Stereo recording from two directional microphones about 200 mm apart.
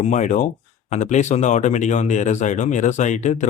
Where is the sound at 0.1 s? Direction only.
40° left (ahead or behind).